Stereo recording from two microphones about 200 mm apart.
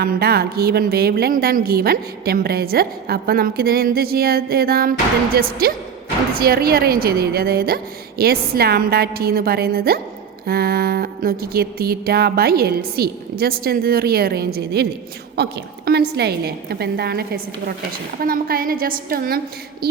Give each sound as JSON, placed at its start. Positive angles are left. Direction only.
{"t": 0.0, "sound": "a woman's voice", "side_deg": -50}